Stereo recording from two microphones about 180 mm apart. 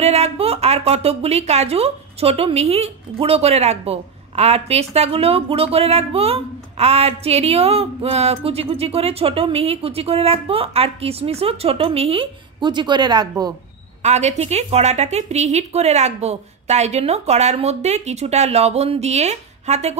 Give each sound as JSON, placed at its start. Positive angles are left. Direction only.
{"t": 0.0, "sound": "speech", "side_deg": -35}
{"t": 14.0, "sound": "speech", "side_deg": -40}